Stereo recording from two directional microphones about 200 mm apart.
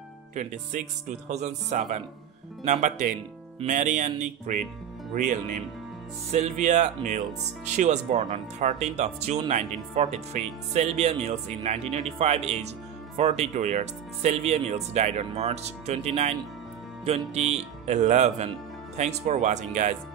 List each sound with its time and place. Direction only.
0.3 s speech: 40° right (ahead or behind)